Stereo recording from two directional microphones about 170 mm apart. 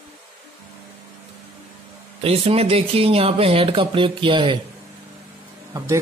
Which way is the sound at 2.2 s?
35° right (ahead or behind).